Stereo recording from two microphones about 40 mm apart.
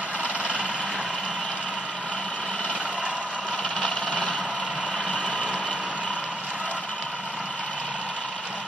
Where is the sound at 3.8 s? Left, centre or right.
Left.